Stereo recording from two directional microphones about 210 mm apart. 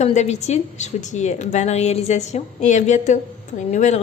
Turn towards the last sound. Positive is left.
turn(degrees=35)  # may be behind; listen again after turning